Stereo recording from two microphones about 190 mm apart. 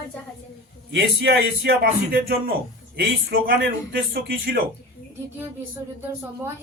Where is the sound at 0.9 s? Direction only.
65° right (ahead or behind).